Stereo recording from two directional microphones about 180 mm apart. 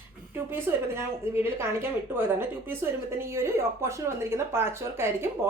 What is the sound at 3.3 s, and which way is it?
A woman's voice, 15° right (ahead or behind).